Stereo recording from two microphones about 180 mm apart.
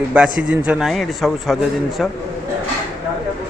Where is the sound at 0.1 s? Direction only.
5° right (ahead or behind).